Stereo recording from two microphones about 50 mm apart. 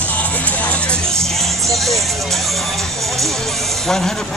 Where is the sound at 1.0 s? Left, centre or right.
Centre.